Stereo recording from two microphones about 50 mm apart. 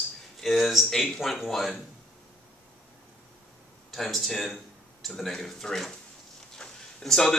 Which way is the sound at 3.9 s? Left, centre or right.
Centre.